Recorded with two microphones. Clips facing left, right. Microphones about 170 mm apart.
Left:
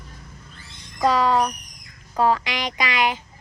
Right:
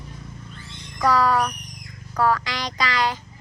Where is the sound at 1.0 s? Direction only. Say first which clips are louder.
Left 1 dB; 20° left (ahead or behind).